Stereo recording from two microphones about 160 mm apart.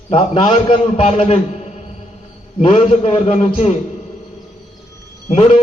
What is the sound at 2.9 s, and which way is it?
Speech, 40° left (ahead or behind).